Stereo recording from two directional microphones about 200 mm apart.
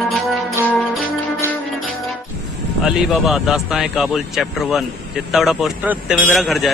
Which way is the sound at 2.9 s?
Centre (ahead or behind).